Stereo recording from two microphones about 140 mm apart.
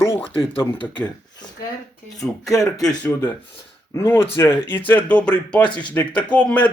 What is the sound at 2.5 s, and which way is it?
Speech, 25° left (ahead or behind).